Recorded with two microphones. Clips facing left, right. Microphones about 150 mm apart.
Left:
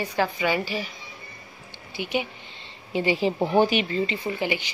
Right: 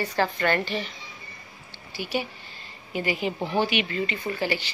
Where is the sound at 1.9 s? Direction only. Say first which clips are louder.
Left 2 dB; 20° left (ahead or behind).